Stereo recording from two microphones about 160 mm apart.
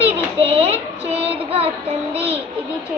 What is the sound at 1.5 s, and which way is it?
Child singing, 35° right (ahead or behind).